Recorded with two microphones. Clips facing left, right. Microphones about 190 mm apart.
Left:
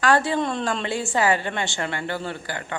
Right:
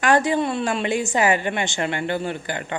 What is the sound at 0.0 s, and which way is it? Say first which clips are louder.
A woman's voice: right 2 dB; 15° right (ahead or behind).